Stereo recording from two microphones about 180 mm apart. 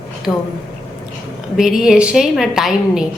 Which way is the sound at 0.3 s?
15° left (ahead or behind).